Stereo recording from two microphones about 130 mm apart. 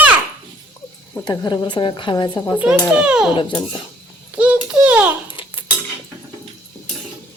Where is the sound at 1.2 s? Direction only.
30° left (ahead or behind).